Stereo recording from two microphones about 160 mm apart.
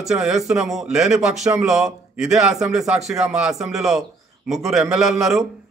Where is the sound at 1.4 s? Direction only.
20° right (ahead or behind).